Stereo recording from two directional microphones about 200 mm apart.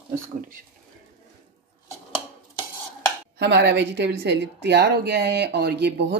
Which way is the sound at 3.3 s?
60° right (ahead or behind).